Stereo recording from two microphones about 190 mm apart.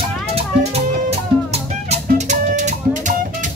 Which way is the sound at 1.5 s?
35° right (ahead or behind).